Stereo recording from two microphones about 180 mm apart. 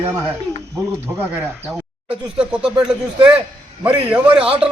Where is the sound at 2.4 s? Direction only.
5° right (ahead or behind).